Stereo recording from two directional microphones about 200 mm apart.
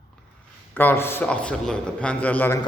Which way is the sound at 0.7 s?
10° left (ahead or behind).